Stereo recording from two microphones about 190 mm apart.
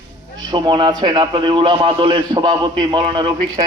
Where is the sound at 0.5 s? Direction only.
25° right (ahead or behind).